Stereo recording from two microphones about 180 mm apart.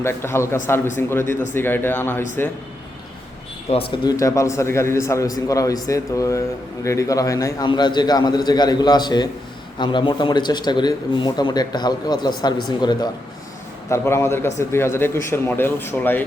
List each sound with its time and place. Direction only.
0.0 s a man's voice: 15° left (ahead or behind)
3.7 s speech: 30° left (ahead or behind)
4.2 s a man's voice: 15° left (ahead or behind)